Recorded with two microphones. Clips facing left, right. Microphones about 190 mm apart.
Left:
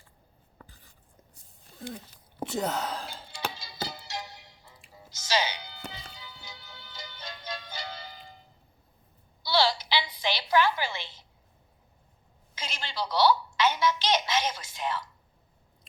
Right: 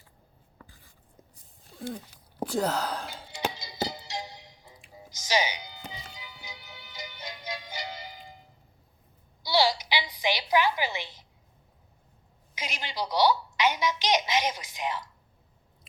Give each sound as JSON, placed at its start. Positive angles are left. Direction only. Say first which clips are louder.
{"t": 2.4, "sound": "speech", "louder": "right 2 dB", "side_deg": 0}
{"t": 3.2, "sound": "music", "louder": "right 4 dB", "side_deg": -20}
{"t": 9.4, "sound": "a sound", "louder": "right 1 dB", "side_deg": -15}
{"t": 12.5, "sound": "a woman's voice", "louder": "right 1 dB", "side_deg": -15}